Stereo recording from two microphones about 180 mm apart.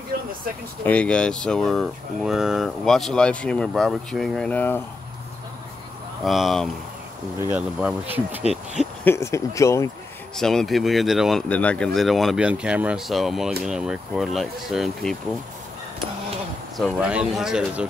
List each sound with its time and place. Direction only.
0.8 s speech: 5° left (ahead or behind)
6.2 s speech: centre (ahead or behind)
9.0 s speech: 15° left (ahead or behind)
10.3 s speech: 5° left (ahead or behind)
16.7 s speech: centre (ahead or behind)